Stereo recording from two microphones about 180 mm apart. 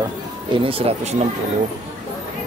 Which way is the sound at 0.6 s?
30° right (ahead or behind).